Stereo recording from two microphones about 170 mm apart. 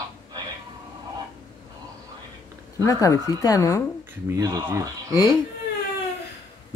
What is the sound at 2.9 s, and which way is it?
Speech, 20° left (ahead or behind).